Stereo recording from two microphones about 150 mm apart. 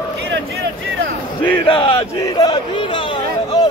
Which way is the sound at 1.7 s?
35° left (ahead or behind).